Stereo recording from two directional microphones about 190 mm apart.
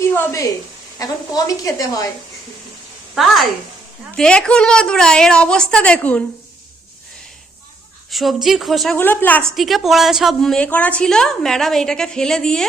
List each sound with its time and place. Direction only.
0.1 s a sound: 10° left (ahead or behind)
0.9 s a woman's voice: 20° left (ahead or behind)
3.2 s speech: centre (ahead or behind)
8.1 s speech: centre (ahead or behind)